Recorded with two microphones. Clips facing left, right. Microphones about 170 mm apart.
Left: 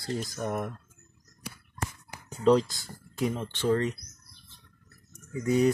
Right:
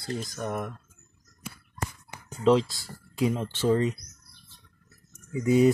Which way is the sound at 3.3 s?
5° right (ahead or behind).